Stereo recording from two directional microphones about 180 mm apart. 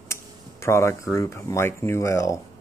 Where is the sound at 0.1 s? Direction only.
15° left (ahead or behind).